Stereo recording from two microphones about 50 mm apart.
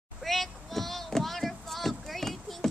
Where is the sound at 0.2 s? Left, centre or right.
Centre.